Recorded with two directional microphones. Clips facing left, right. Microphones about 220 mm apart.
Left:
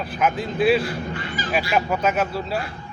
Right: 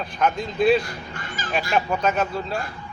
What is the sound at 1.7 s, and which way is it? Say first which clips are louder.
Speech: even; 5° left (ahead or behind).